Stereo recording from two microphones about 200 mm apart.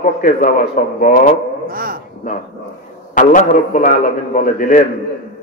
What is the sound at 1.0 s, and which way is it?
Mantra, 40° left (ahead or behind).